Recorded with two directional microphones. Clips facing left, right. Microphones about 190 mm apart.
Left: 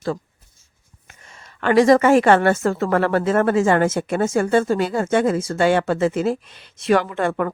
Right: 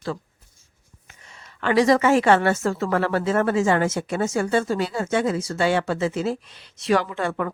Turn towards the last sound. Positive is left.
turn(degrees=55)  # may be behind; listen again after turning